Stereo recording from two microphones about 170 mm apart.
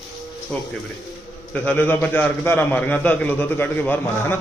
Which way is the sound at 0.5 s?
5° left (ahead or behind).